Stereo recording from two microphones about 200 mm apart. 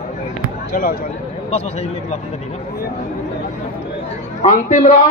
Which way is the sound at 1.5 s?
30° left (ahead or behind).